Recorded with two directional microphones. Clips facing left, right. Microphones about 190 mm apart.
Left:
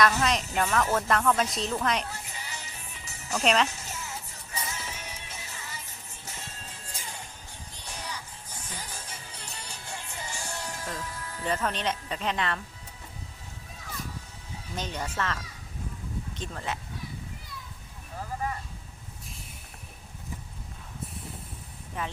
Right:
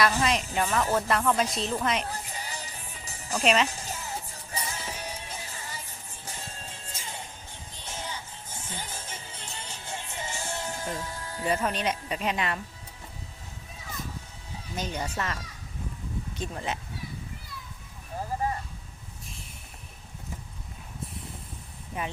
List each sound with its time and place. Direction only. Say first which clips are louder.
0.0 s speech: even; centre (ahead or behind)
2.0 s music: right 4 dB; 35° right (ahead or behind)
3.3 s speech: right 1 dB; centre (ahead or behind)
3.7 s music: right 3 dB; 35° right (ahead or behind)
11.4 s speech: right 2 dB; 10° right (ahead or behind)
14.8 s speech: right 1 dB; 10° right (ahead or behind)
16.4 s speech: right 3 dB; 15° right (ahead or behind)
22.0 s speech: right 1 dB; 15° right (ahead or behind)